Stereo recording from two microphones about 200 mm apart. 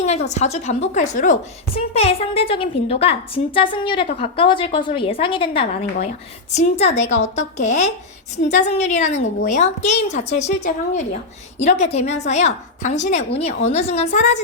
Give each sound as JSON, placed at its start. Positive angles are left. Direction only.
{"t": 0.0, "sound": "a woman's voice", "side_deg": 35}